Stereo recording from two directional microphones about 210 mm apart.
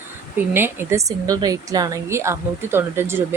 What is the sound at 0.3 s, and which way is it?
Speech, 10° right (ahead or behind).